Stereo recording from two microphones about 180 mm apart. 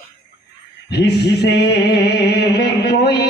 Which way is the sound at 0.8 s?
65° left (ahead or behind).